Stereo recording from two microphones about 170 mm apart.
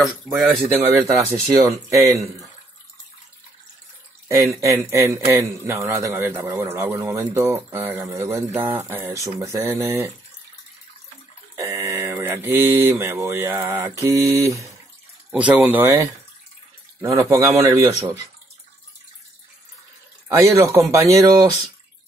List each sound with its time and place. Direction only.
0.0 s speech: 5° right (ahead or behind)
1.5 s a man's voice: 20° right (ahead or behind)
4.5 s speech: 15° right (ahead or behind)
11.5 s speech: 15° right (ahead or behind)
15.3 s speech: 10° right (ahead or behind)
17.0 s a man's voice: 20° right (ahead or behind)
20.2 s speech: 20° right (ahead or behind)